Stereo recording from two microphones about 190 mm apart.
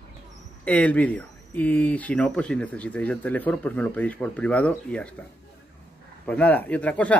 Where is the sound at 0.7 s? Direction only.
10° left (ahead or behind).